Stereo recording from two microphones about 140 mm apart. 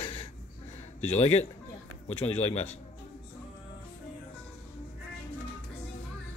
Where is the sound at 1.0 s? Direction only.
50° left (ahead or behind).